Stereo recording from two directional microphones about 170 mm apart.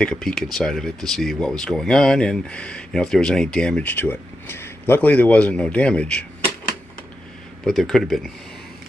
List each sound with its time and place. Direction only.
0.0 s speech: 5° left (ahead or behind)
7.6 s speech: centre (ahead or behind)